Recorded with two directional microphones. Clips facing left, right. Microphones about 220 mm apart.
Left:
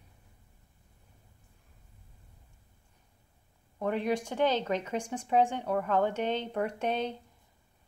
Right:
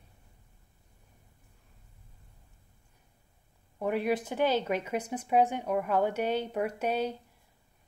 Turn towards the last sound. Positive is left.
turn(degrees=-10)  # may be behind; listen again after turning